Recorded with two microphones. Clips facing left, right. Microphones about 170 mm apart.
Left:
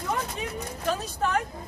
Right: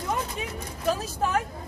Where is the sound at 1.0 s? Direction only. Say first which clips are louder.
Even; 5° right (ahead or behind).